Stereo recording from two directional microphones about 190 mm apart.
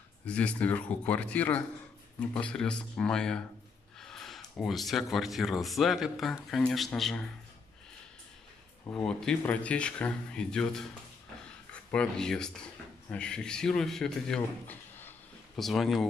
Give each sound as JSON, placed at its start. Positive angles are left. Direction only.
{"t": 0.2, "sound": "speech", "side_deg": 5}
{"t": 8.8, "sound": "speech", "side_deg": 5}
{"t": 11.9, "sound": "speech", "side_deg": 5}